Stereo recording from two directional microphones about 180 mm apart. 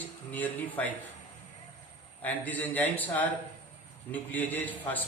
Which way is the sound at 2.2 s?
10° left (ahead or behind).